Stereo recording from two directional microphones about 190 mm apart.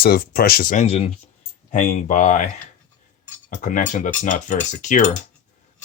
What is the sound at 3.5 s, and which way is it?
Speech, 40° left (ahead or behind).